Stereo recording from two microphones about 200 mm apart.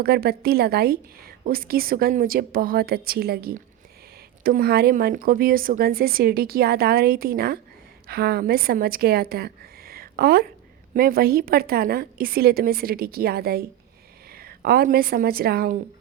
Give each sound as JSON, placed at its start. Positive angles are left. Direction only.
{"t": 0.0, "sound": "a woman's voice", "side_deg": -50}